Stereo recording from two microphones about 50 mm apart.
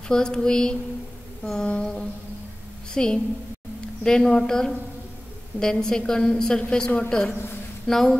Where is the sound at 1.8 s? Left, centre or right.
Centre.